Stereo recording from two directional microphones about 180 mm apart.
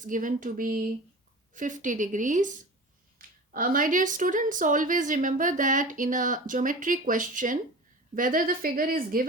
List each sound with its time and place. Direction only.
0.0 s a woman's voice: 45° right (ahead or behind)